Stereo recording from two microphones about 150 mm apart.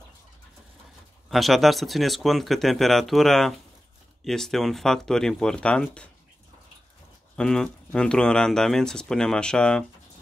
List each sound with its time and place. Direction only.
1.3 s speech: centre (ahead or behind)
7.3 s speech: 5° left (ahead or behind)